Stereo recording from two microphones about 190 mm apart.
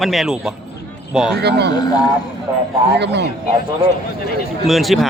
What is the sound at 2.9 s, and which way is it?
Speech, 65° right (ahead or behind).